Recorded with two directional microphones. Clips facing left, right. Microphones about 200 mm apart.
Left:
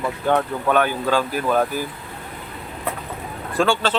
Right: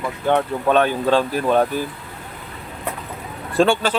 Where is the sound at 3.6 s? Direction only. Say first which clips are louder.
Right 3 dB; 25° right (ahead or behind).